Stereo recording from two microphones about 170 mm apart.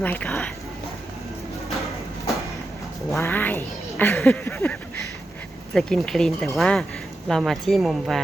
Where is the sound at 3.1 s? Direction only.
10° left (ahead or behind).